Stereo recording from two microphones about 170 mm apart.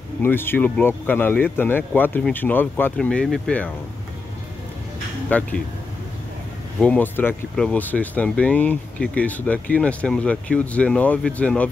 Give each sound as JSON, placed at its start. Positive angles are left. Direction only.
{"t": 0.2, "sound": "speech", "side_deg": 10}
{"t": 5.3, "sound": "speech", "side_deg": 10}
{"t": 6.8, "sound": "speech", "side_deg": 10}